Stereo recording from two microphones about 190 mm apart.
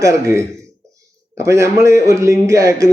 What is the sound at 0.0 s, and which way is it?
A man's voice, 15° right (ahead or behind).